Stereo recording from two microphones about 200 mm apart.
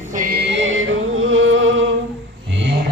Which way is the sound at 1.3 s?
85° right.